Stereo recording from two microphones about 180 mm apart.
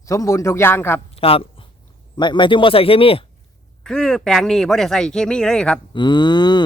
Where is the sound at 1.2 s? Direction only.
30° left (ahead or behind).